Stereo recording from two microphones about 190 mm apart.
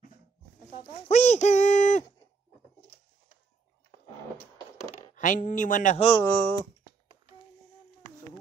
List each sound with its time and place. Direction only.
1.0 s speech: 35° left (ahead or behind)
5.1 s speech: 45° left (ahead or behind)
6.2 s speech: 10° left (ahead or behind)